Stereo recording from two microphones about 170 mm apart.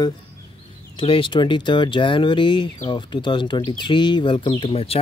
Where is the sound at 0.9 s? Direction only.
30° left (ahead or behind).